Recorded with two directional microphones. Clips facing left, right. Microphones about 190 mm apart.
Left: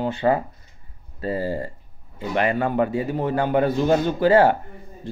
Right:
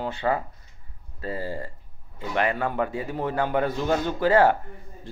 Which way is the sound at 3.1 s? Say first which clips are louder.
Left 3 dB; 25° left (ahead or behind).